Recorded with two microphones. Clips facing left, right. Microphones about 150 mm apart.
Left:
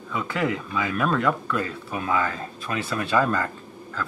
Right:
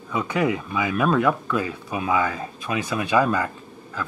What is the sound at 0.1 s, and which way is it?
Speech, 15° right (ahead or behind).